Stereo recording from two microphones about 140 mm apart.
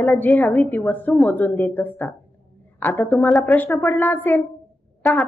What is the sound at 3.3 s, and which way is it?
Speech, centre (ahead or behind).